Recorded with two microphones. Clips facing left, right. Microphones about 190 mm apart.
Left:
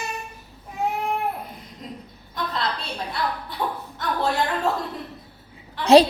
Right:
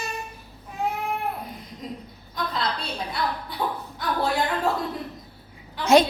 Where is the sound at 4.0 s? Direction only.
Centre (ahead or behind).